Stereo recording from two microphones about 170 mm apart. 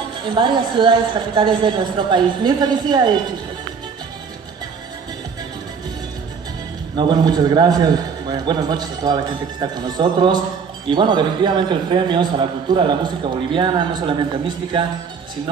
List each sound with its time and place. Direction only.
0.3 s a man's voice: 25° right (ahead or behind)
7.0 s a man's voice: 25° right (ahead or behind)